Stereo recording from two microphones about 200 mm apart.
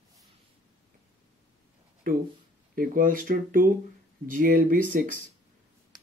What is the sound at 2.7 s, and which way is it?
Speech, 45° right (ahead or behind).